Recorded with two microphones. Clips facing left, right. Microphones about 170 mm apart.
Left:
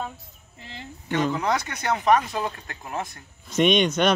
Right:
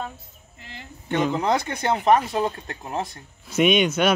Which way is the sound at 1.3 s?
25° right (ahead or behind).